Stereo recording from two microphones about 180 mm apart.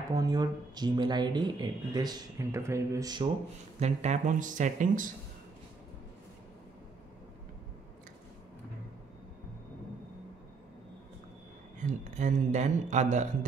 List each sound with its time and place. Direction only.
0.1 s speech: 20° right (ahead or behind)
3.8 s speech: 40° right (ahead or behind)
11.8 s speech: 45° right (ahead or behind)